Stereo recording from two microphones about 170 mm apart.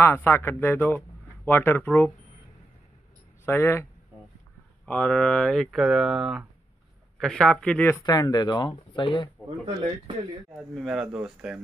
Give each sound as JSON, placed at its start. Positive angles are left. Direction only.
{"t": 0.0, "sound": "speech", "side_deg": 15}
{"t": 3.4, "sound": "speech", "side_deg": 15}
{"t": 4.8, "sound": "speech", "side_deg": 10}
{"t": 8.0, "sound": "speech", "side_deg": 25}
{"t": 10.5, "sound": "speech", "side_deg": 0}